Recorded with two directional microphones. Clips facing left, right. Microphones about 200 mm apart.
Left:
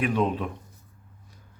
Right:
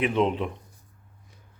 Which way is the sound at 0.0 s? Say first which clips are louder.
Right 1 dB; 20° right (ahead or behind).